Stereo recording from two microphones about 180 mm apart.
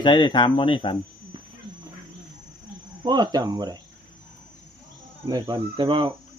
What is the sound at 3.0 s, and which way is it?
Speech, 25° right (ahead or behind).